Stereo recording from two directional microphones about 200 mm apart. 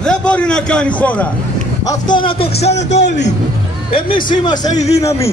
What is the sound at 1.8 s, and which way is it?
Speech, 20° left (ahead or behind).